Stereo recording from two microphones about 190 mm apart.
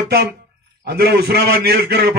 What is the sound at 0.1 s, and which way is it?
A man's voice, 55° right (ahead or behind).